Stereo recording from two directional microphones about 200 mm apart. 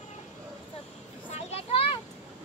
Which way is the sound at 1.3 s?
30° left (ahead or behind).